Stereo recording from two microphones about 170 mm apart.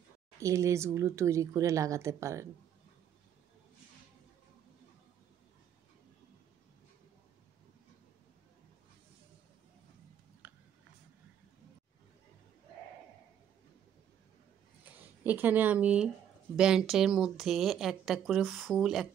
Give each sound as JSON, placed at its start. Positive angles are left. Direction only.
{"t": 0.4, "sound": "speech", "side_deg": -15}
{"t": 10.4, "sound": "a sound", "side_deg": -10}
{"t": 15.0, "sound": "speech", "side_deg": -10}